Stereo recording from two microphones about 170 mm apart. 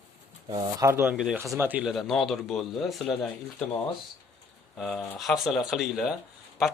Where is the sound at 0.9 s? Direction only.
5° right (ahead or behind).